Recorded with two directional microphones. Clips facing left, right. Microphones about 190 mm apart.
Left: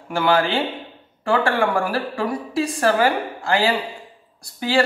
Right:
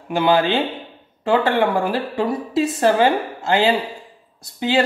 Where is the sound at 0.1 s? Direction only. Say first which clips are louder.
Right 2 dB; 20° right (ahead or behind).